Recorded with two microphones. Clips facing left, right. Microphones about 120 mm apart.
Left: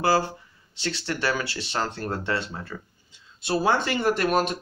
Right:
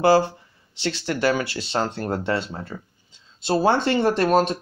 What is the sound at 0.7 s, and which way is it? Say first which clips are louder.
Speech: right 4 dB; 25° right (ahead or behind).